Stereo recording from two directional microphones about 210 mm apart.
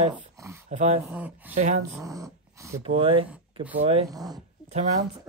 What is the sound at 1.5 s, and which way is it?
Speech, 35° right (ahead or behind).